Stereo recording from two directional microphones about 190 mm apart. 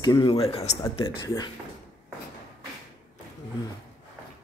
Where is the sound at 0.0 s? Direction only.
25° left (ahead or behind).